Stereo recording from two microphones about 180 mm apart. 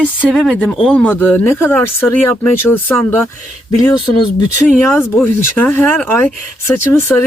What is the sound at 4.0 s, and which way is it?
Speech, 25° left (ahead or behind).